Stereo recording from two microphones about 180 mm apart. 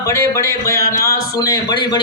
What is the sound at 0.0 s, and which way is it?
Speech, 15° left (ahead or behind).